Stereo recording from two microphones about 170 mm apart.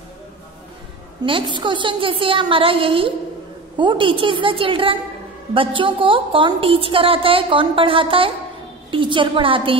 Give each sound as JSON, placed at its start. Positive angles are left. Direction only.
{"t": 1.2, "sound": "a woman's voice", "side_deg": -30}